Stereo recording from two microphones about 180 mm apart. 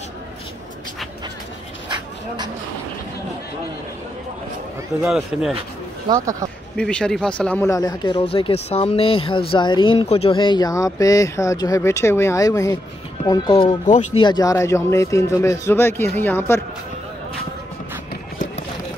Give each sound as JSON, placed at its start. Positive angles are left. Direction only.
{"t": 1.9, "sound": "a sound", "side_deg": -25}
{"t": 5.0, "sound": "speech", "side_deg": 0}
{"t": 6.0, "sound": "speech", "side_deg": -20}
{"t": 6.8, "sound": "a man's voice", "side_deg": 5}